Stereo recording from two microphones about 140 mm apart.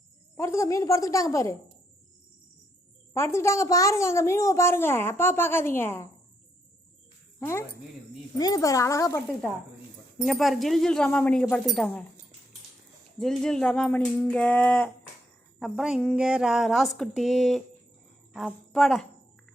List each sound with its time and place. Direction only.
0.3 s a woman's voice: 20° left (ahead or behind)
3.2 s a woman's voice: 20° left (ahead or behind)
7.3 s a woman's voice: 20° left (ahead or behind)
10.2 s speech: centre (ahead or behind)
13.1 s a sound: 5° left (ahead or behind)
15.5 s a woman's voice: centre (ahead or behind)